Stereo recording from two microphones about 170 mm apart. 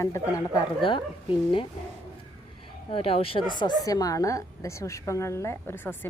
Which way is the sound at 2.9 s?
35° left (ahead or behind).